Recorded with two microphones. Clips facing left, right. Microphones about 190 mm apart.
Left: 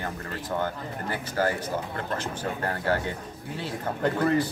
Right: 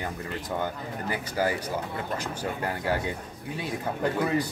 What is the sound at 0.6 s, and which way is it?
Speech, 10° right (ahead or behind).